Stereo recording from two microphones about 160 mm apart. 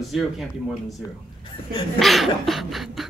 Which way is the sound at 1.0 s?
20° left (ahead or behind).